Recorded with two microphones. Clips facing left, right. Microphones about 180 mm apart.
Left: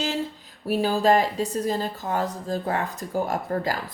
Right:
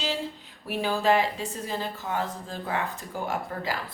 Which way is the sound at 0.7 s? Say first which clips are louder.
Left 4 dB; 40° left (ahead or behind).